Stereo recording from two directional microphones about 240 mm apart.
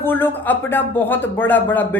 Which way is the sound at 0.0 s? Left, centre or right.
Centre.